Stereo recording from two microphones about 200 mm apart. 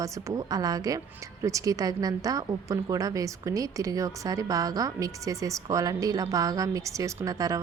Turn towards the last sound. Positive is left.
turn(degrees=-15)  # may be behind; listen again after turning